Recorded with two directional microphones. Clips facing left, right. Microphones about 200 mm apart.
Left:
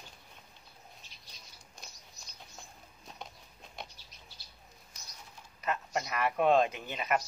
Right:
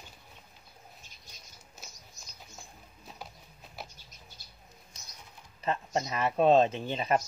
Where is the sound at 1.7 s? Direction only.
5° right (ahead or behind).